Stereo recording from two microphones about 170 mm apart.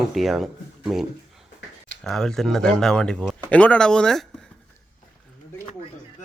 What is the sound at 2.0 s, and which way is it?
Speech, 5° left (ahead or behind).